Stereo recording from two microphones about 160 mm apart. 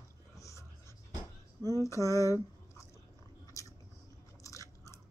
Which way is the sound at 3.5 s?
20° left (ahead or behind).